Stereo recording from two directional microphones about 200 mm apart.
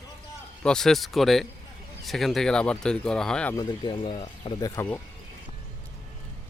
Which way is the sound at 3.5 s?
20° left (ahead or behind).